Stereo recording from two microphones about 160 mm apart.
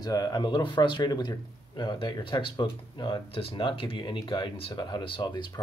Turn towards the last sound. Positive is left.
turn(degrees=30)  # may be behind; listen again after turning